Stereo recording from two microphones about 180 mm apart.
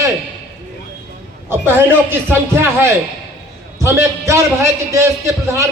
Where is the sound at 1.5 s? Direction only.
10° right (ahead or behind).